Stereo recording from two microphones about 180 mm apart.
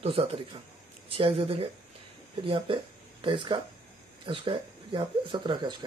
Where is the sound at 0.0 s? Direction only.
30° right (ahead or behind).